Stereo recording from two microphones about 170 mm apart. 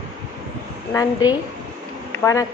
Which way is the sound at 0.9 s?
20° left (ahead or behind).